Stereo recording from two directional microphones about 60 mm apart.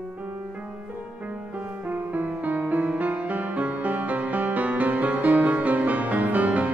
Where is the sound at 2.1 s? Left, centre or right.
Right.